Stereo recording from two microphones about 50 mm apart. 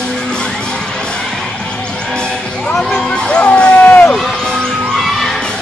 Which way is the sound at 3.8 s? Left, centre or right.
Left.